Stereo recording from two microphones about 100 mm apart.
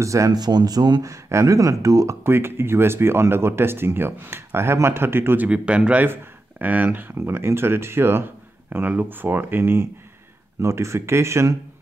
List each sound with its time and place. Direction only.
0.0 s speech: 30° right (ahead or behind)
2.2 s speech: 20° right (ahead or behind)